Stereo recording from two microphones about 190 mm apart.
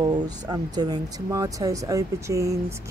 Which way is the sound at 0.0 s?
20° right (ahead or behind).